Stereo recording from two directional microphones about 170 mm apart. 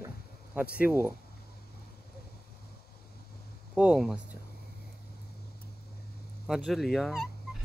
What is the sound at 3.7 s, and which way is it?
Speech, 5° right (ahead or behind).